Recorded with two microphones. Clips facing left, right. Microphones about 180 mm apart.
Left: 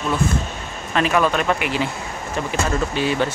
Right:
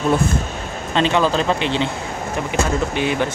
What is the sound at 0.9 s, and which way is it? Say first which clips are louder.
Speech: right 1 dB; 25° right (ahead or behind).